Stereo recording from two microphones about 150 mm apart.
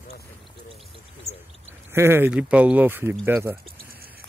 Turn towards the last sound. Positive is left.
turn(degrees=-15)  # may be behind; listen again after turning